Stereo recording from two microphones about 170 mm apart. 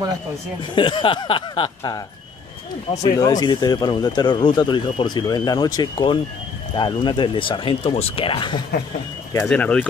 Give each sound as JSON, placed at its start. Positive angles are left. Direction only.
{"t": 0.7, "sound": "speech", "side_deg": 30}
{"t": 3.2, "sound": "speech", "side_deg": 25}
{"t": 9.3, "sound": "speech", "side_deg": 10}